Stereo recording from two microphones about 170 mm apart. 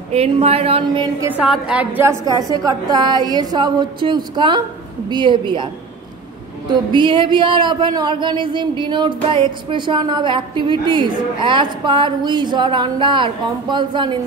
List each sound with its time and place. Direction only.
0.1 s speech: 35° right (ahead or behind)
1.3 s a woman's voice: 5° right (ahead or behind)
2.2 s speech: 25° right (ahead or behind)
6.7 s speech: 25° right (ahead or behind)